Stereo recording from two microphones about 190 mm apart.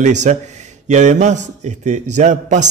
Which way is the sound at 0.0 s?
40° right (ahead or behind).